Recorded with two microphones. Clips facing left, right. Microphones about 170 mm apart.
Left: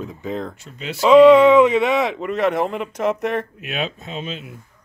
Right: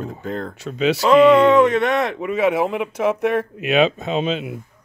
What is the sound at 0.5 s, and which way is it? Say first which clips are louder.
Speech: right 12 dB; 90° right.